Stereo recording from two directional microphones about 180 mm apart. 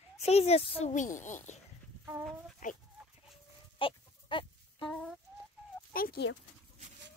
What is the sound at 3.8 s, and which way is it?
Chicken, 30° left (ahead or behind).